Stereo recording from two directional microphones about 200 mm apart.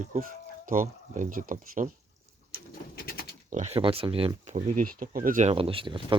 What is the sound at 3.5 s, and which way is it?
Speech, 35° right (ahead or behind).